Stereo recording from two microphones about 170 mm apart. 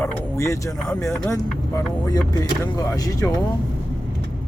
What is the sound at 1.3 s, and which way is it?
Speech, 20° left (ahead or behind).